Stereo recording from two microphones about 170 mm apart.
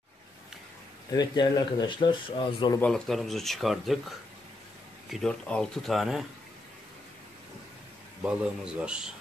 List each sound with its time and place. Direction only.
1.1 s speech: 25° left (ahead or behind)
2.8 s speech: centre (ahead or behind)
5.1 s speech: 5° left (ahead or behind)
8.2 s a man's voice: 5° right (ahead or behind)